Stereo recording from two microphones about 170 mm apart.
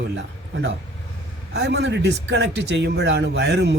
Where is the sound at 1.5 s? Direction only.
85° right.